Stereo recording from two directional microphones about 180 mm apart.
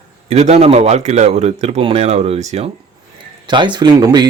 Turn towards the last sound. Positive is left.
turn(degrees=-20)  # may be behind; listen again after turning